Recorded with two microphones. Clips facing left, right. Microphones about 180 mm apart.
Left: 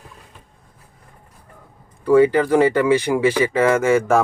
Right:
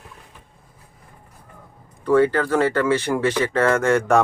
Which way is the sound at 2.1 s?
10° left (ahead or behind).